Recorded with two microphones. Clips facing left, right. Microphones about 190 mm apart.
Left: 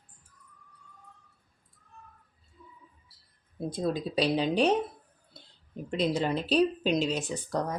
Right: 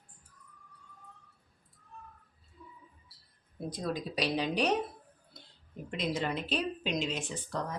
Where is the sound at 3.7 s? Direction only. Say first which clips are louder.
Left 5 dB; 25° left (ahead or behind).